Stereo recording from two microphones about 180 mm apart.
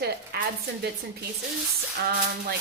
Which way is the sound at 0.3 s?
60° right (ahead or behind).